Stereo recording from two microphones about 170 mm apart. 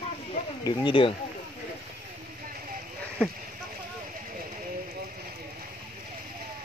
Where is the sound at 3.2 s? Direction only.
5° left (ahead or behind).